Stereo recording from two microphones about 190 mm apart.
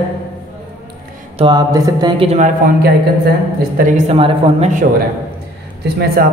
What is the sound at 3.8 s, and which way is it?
A man's voice, 35° right (ahead or behind).